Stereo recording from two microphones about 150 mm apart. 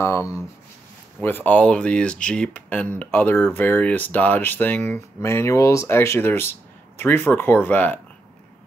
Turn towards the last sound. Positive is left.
turn(degrees=10)  # may be behind; listen again after turning